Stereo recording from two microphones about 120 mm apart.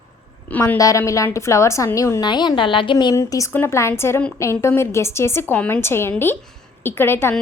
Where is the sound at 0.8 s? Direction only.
25° left (ahead or behind).